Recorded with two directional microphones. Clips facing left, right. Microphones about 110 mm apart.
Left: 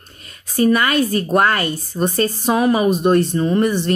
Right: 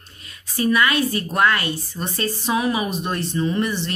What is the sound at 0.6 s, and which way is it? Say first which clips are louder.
A woman's voice: left 4 dB; 45° left (ahead or behind).